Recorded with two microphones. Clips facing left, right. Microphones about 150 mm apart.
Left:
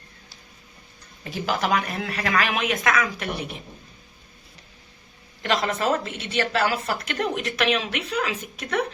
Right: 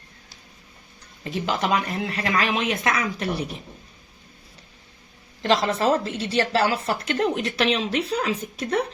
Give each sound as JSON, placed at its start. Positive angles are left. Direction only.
{"t": 1.2, "sound": "a woman's voice", "side_deg": -25}
{"t": 5.4, "sound": "a woman's voice", "side_deg": -30}